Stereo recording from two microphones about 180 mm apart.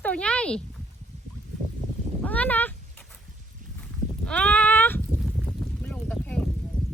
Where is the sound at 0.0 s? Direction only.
5° left (ahead or behind).